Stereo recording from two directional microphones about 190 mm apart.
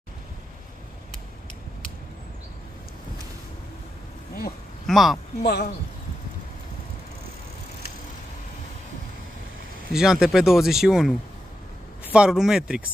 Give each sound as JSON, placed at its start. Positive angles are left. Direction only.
{"t": 4.8, "sound": "speech", "side_deg": 0}
{"t": 5.4, "sound": "speech", "side_deg": 55}
{"t": 9.9, "sound": "speech", "side_deg": 0}